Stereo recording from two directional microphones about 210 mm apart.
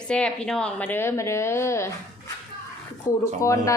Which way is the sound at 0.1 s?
5° left (ahead or behind).